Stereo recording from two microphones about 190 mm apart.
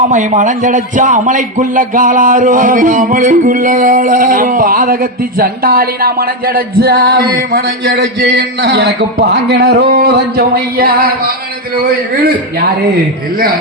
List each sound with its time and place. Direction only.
0.1 s a man's voice: 40° right (ahead or behind)
12.2 s a man's voice: 55° right (ahead or behind)